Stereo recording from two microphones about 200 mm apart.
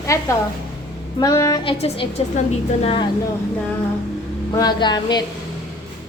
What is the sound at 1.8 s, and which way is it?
A woman's voice, 30° left (ahead or behind).